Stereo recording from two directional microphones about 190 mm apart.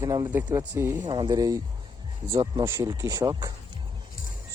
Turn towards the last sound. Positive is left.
turn(degrees=-20)  # may be behind; listen again after turning